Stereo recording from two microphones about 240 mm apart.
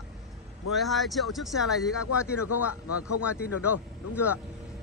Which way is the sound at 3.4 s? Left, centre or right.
Left.